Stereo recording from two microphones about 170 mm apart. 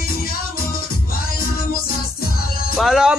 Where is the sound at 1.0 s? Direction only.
60° left (ahead or behind).